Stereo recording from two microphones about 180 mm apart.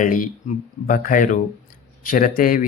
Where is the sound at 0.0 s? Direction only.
45° left (ahead or behind).